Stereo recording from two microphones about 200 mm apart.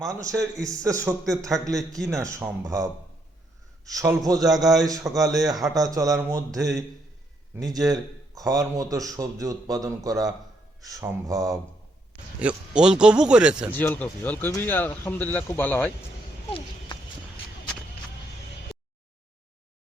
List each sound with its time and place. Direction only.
0.0 s speech: 15° right (ahead or behind)
3.9 s a man's voice: 20° right (ahead or behind)
12.4 s a man's voice: 5° right (ahead or behind)
13.7 s speech: 10° left (ahead or behind)